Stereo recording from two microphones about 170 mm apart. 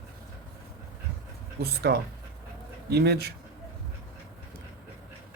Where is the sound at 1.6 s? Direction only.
70° right (ahead or behind).